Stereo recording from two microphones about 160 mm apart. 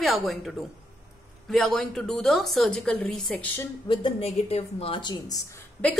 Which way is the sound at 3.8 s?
35° left (ahead or behind).